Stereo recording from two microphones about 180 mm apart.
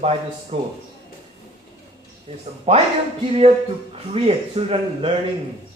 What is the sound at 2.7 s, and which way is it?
Speech, 30° right (ahead or behind).